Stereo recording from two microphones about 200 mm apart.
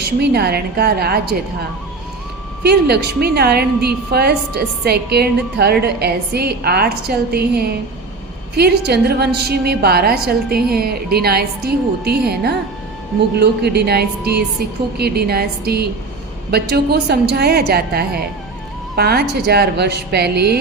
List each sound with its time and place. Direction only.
0.0 s a woman's voice: 55° right (ahead or behind)
2.6 s a woman's voice: 55° right (ahead or behind)